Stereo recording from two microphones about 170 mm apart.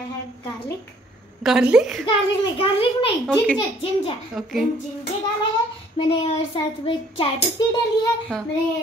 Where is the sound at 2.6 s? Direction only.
35° left (ahead or behind).